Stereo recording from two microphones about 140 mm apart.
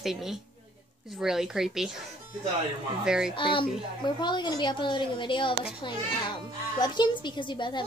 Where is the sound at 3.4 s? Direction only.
35° left (ahead or behind).